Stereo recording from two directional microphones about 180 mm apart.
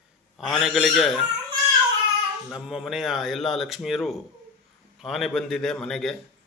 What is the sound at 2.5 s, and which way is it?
A man's voice, centre (ahead or behind).